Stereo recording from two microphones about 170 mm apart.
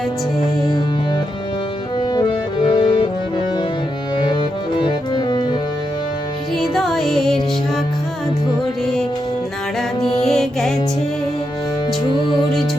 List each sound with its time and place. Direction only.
2.7 s accordion: 30° left (ahead or behind)
4.8 s music: 25° left (ahead or behind)
6.6 s music: centre (ahead or behind)
10.2 s music: 5° left (ahead or behind)